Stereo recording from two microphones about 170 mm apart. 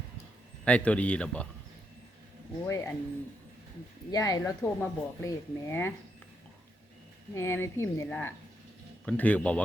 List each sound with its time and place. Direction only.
0.6 s speech: 5° left (ahead or behind)
2.6 s speech: 15° left (ahead or behind)
4.1 s speech: 20° left (ahead or behind)
7.3 s speech: 15° left (ahead or behind)